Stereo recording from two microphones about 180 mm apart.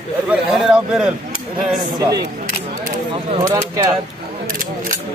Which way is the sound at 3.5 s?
15° right (ahead or behind).